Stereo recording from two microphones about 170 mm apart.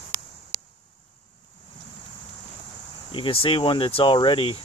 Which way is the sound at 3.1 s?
30° left (ahead or behind).